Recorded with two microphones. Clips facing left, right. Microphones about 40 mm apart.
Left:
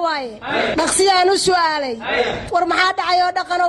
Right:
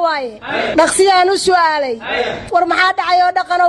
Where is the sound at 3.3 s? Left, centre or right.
Right.